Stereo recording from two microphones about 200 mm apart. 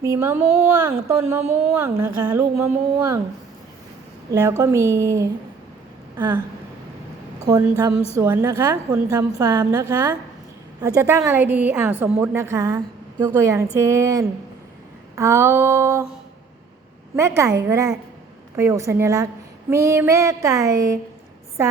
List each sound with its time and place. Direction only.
0.0 s speech: 15° right (ahead or behind)
4.3 s speech: 15° right (ahead or behind)
7.8 s speech: 15° right (ahead or behind)
17.2 s a woman's voice: 15° right (ahead or behind)